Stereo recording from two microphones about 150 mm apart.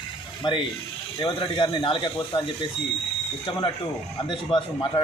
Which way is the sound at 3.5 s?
35° left (ahead or behind).